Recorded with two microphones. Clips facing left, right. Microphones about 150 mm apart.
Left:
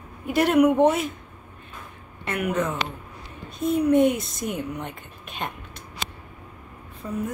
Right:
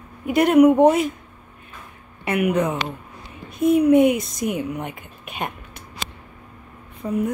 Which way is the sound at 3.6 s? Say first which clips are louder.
Right 6 dB; 60° right (ahead or behind).